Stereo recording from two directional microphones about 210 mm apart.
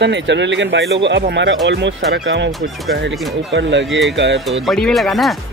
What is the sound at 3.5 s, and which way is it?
Speech, 55° right (ahead or behind).